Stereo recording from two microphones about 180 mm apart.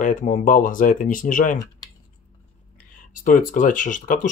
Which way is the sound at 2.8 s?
45° left (ahead or behind).